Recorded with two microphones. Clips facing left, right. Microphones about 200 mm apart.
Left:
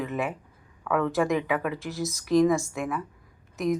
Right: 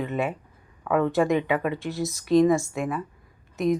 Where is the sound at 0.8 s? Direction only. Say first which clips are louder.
Right 3 dB; 30° right (ahead or behind).